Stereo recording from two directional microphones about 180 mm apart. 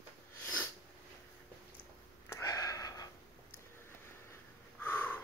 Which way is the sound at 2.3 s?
20° left (ahead or behind).